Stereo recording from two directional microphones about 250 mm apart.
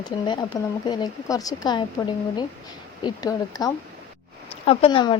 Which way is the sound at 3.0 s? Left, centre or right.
Centre.